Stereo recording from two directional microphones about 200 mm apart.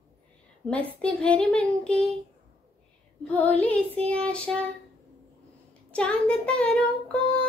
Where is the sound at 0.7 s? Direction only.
5° left (ahead or behind).